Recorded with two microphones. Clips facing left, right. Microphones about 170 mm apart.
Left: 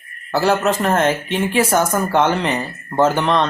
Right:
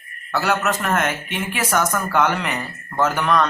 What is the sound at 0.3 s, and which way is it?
Speech, 30° left (ahead or behind).